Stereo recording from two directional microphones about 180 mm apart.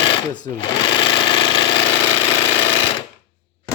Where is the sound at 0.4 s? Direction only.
30° left (ahead or behind).